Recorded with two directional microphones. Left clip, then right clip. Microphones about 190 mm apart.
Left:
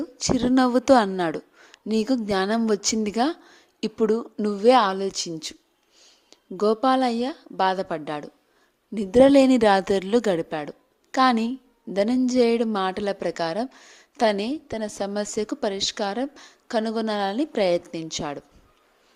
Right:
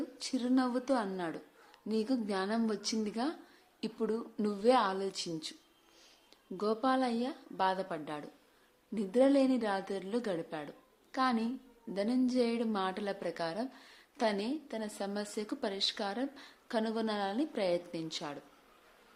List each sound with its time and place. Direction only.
0.0 s a woman's voice: 40° left (ahead or behind)